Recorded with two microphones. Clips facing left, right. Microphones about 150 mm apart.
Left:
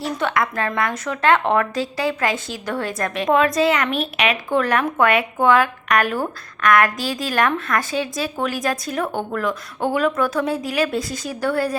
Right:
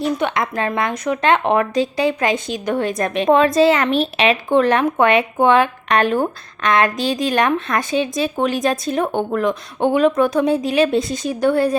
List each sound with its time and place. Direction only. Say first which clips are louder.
0.0 s speech: right 2 dB; 20° right (ahead or behind)